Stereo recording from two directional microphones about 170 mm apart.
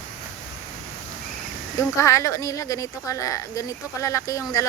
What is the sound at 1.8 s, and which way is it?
Speech, 20° left (ahead or behind).